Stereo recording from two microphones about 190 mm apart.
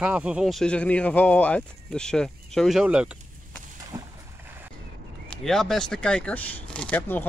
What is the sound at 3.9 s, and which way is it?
Boat, 20° right (ahead or behind).